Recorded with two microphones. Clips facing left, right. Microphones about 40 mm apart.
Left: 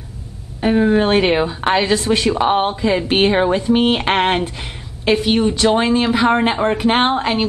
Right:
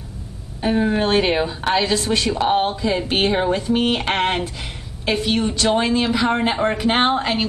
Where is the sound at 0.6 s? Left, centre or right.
Centre.